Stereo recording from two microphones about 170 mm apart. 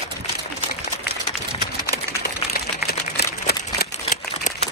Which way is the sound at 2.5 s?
70° left (ahead or behind).